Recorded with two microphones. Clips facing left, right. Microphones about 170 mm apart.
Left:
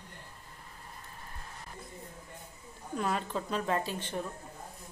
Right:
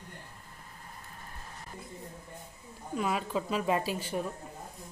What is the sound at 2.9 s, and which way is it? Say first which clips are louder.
A woman's voice: right 2 dB; 5° right (ahead or behind).